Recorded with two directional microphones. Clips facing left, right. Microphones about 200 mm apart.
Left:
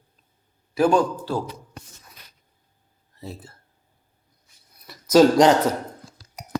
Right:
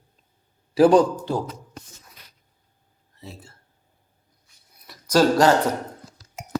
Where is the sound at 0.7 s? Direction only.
35° right (ahead or behind).